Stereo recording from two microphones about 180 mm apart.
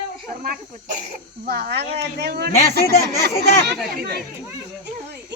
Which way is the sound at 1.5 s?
65° right (ahead or behind).